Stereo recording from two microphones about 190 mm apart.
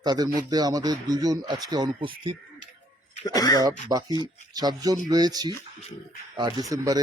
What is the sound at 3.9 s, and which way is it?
Speech, 20° right (ahead or behind).